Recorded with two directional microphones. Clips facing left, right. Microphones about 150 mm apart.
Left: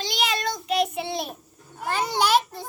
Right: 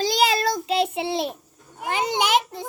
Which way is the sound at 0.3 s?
35° right (ahead or behind).